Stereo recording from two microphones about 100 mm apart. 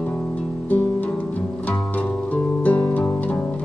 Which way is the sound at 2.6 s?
15° left (ahead or behind).